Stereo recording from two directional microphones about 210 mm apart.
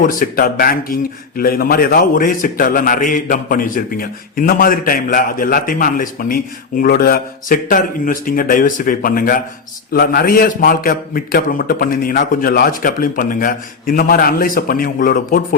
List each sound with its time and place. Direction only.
0.0 s a man's voice: 40° left (ahead or behind)